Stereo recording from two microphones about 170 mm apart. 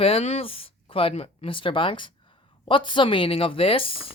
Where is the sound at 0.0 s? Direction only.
35° left (ahead or behind).